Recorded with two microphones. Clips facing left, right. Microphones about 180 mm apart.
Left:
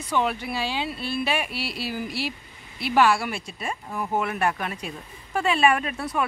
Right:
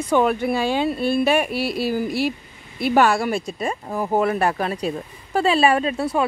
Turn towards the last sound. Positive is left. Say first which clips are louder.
# right 6 dB
turn(degrees=-30)  # may be behind; listen again after turning